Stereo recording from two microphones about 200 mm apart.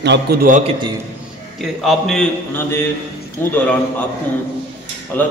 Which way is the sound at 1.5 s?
Centre (ahead or behind).